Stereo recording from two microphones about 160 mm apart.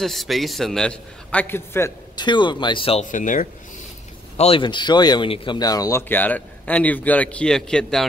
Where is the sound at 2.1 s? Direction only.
30° left (ahead or behind).